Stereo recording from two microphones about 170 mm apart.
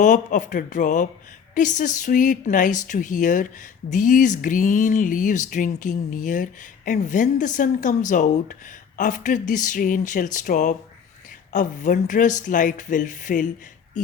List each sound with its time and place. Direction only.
0.0 s a woman's voice: 50° left (ahead or behind)